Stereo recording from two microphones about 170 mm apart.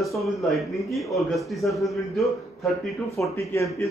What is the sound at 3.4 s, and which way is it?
Speech, 15° left (ahead or behind).